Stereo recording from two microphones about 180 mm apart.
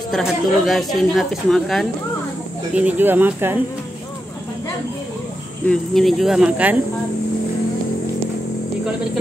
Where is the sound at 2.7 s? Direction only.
10° right (ahead or behind).